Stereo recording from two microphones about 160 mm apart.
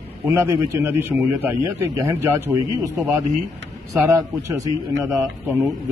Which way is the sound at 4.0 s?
20° right (ahead or behind).